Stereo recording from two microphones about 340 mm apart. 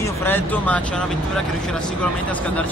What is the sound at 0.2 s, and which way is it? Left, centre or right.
Speech, centre.